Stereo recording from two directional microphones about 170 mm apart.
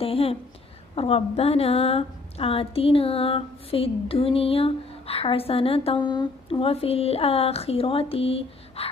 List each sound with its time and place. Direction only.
0.0 s a woman's voice: 35° left (ahead or behind)